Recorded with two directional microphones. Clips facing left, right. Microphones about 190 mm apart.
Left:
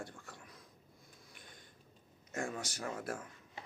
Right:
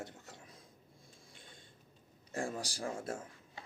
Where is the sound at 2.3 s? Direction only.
35° right (ahead or behind).